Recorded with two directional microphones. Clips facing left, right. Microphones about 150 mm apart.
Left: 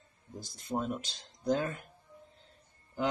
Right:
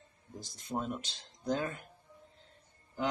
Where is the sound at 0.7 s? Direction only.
20° left (ahead or behind).